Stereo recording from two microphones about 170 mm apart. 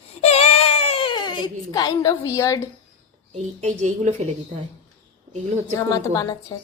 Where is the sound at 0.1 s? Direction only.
40° left (ahead or behind); by 2.6 s 15° left (ahead or behind).